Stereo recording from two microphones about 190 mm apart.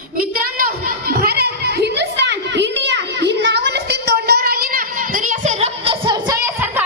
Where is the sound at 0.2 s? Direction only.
50° right (ahead or behind).